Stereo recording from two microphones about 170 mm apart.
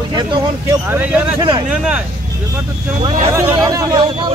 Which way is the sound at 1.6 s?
5° right (ahead or behind).